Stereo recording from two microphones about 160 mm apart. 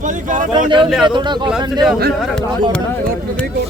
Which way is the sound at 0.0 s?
55° right (ahead or behind).